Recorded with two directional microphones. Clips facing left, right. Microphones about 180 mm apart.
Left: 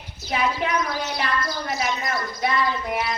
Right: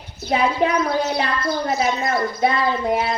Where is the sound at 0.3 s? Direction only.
30° right (ahead or behind).